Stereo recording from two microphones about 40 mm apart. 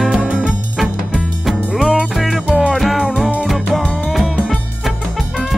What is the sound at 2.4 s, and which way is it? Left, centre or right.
Music, right.